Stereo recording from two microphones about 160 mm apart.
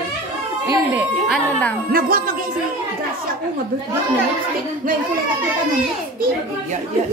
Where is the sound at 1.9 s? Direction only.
65° right (ahead or behind).